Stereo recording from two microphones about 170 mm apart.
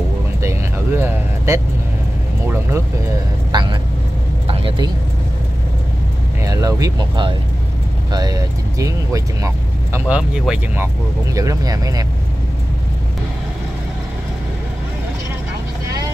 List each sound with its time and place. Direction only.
0.4 s vehicle: 15° right (ahead or behind)
2.4 s speech: 15° right (ahead or behind)
3.5 s vehicle: 25° right (ahead or behind)
6.4 s speech: 20° right (ahead or behind)
9.9 s speech: 5° right (ahead or behind)
11.3 s speech: 20° right (ahead or behind)